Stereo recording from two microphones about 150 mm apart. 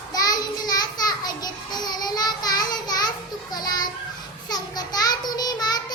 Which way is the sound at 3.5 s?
25° left (ahead or behind).